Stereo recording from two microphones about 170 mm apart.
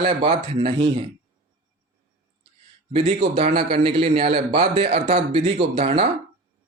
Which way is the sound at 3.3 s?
35° right (ahead or behind).